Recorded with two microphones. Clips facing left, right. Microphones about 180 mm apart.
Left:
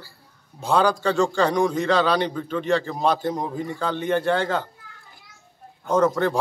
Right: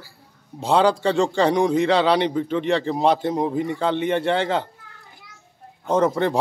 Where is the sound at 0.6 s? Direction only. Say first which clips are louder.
Right 2 dB; 25° right (ahead or behind).